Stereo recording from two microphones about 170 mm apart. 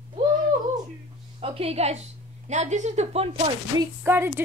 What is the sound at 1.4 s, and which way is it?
A woman's voice, 35° right (ahead or behind).